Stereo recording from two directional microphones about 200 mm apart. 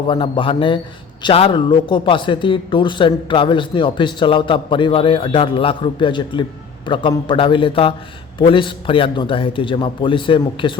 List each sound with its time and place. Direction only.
0.1 s a man's voice: 25° left (ahead or behind)